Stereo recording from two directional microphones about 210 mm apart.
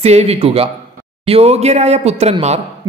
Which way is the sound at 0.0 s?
30° right (ahead or behind).